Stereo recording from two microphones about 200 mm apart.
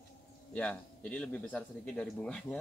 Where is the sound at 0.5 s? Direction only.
5° left (ahead or behind).